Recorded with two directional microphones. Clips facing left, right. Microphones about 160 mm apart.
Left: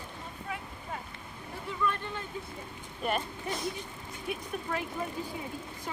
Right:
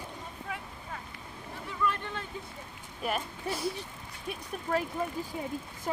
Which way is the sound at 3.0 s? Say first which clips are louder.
Left 1 dB; 5° right (ahead or behind).